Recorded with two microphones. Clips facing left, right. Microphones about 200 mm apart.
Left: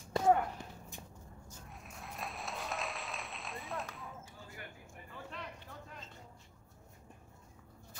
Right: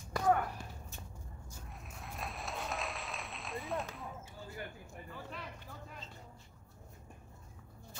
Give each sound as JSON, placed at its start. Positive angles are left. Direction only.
{"t": 0.1, "sound": "walk", "side_deg": 25}
{"t": 1.5, "sound": "applause", "side_deg": 0}
{"t": 5.1, "sound": "a sound", "side_deg": -5}